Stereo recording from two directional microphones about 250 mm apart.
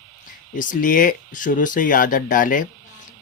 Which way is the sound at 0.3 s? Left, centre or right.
Left.